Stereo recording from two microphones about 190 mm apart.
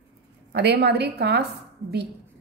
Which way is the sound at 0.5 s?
60° right (ahead or behind).